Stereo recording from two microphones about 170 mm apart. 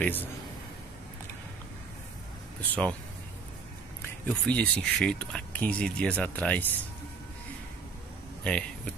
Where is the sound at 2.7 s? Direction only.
5° left (ahead or behind).